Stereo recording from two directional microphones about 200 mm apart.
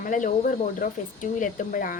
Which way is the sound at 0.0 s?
40° left (ahead or behind).